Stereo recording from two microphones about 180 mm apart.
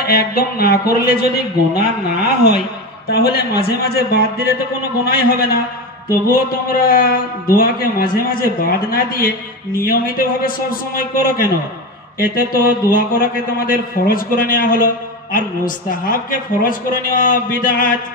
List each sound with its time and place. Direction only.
0.0 s a man's voice: 55° left (ahead or behind)
3.1 s a man's voice: 60° left (ahead or behind)